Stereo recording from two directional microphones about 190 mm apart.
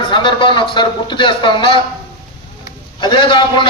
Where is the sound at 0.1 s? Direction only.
25° left (ahead or behind).